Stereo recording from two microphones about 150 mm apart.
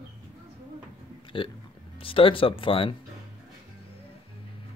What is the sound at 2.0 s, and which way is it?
Speech, 35° left (ahead or behind).